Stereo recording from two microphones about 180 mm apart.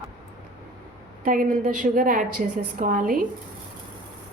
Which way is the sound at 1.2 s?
50° right (ahead or behind).